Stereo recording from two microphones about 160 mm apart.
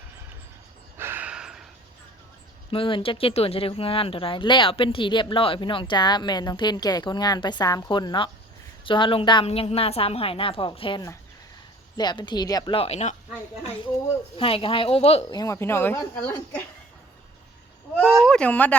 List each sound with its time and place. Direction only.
0.9 s gasp: 15° right (ahead or behind)
2.6 s speech: 35° left (ahead or behind)
12.7 s speech: 40° left (ahead or behind)
14.3 s speech: 35° left (ahead or behind)
15.3 s speech: 25° left (ahead or behind)
18.2 s speech: 5° left (ahead or behind)